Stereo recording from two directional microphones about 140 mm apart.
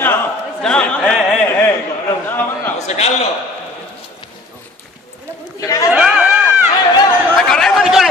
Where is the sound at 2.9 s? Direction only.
50° left (ahead or behind).